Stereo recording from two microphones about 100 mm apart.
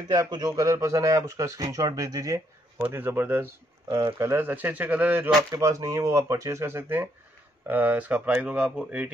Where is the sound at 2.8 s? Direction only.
20° right (ahead or behind).